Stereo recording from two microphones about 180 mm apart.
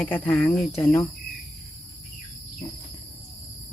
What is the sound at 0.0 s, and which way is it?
Speech, 5° left (ahead or behind).